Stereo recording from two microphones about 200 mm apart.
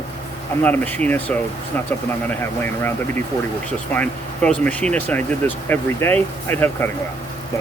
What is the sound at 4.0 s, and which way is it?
Speech, 5° left (ahead or behind).